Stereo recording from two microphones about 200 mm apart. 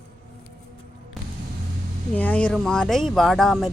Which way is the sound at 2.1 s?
5° left (ahead or behind).